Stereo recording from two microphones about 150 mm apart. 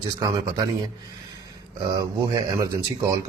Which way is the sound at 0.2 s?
25° right (ahead or behind).